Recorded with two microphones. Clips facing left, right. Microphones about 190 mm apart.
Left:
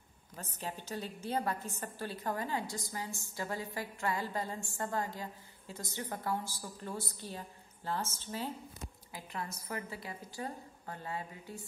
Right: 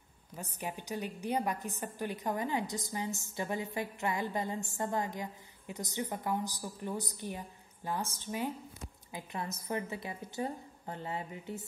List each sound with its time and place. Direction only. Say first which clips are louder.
0.4 s a woman's voice: right 2 dB; 15° right (ahead or behind)